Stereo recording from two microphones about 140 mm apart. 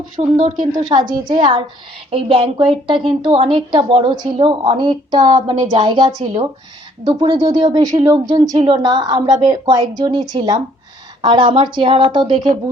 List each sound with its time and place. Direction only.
0.4 s a woman's voice: 30° right (ahead or behind)
2.0 s a woman's voice: 45° right (ahead or behind)
7.3 s a woman's voice: 30° right (ahead or behind)